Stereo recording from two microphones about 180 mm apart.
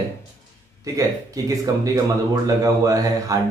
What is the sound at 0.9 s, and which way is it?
Speech, 20° right (ahead or behind).